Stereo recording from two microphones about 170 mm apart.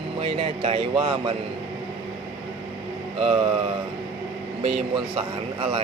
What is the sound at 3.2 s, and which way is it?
Speech, 30° right (ahead or behind).